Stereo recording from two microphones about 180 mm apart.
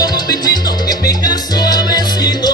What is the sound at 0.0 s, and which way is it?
Music, 20° left (ahead or behind).